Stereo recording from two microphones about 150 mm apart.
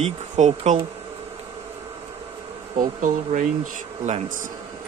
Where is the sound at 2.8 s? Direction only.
60° right (ahead or behind).